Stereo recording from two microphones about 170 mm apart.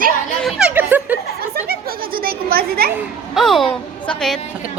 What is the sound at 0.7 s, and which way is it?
Chuckle, 10° right (ahead or behind).